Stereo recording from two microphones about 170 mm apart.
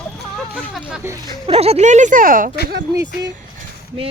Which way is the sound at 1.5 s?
35° right (ahead or behind).